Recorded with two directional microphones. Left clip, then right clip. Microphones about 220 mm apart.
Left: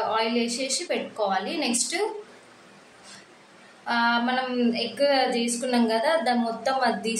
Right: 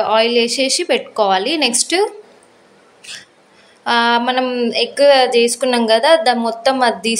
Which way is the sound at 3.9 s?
45° right (ahead or behind).